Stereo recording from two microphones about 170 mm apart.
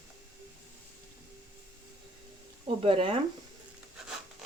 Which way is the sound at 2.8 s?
35° right (ahead or behind).